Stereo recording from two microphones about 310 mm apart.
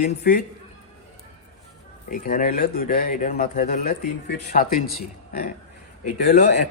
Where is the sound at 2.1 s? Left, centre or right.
Left.